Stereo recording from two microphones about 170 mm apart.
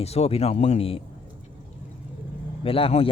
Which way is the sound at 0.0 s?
35° left (ahead or behind).